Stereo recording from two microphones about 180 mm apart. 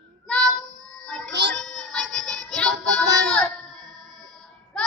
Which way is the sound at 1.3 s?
70° right (ahead or behind).